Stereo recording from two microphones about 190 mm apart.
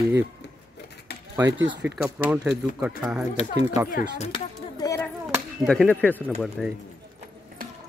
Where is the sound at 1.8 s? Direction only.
5° right (ahead or behind).